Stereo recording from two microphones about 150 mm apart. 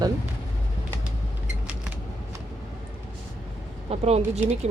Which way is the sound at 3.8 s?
45° right (ahead or behind).